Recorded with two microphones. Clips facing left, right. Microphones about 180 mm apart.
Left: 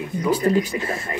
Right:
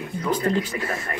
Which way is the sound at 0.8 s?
20° left (ahead or behind).